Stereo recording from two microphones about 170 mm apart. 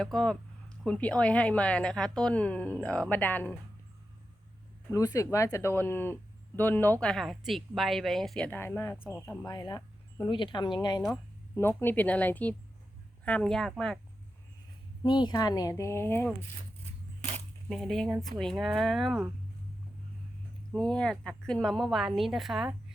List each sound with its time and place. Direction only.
0.0 s a woman's voice: 5° left (ahead or behind)
4.9 s a woman's voice: 20° left (ahead or behind)
9.5 s speech: 25° left (ahead or behind)
11.8 s a woman's voice: 10° left (ahead or behind)
15.0 s speech: 25° left (ahead or behind)
17.7 s a woman's voice: centre (ahead or behind)
20.7 s a woman's voice: 5° left (ahead or behind)